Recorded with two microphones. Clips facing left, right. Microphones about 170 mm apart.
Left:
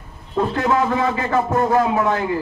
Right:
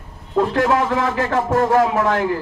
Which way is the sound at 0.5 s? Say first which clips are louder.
Left 1 dB; 90° right.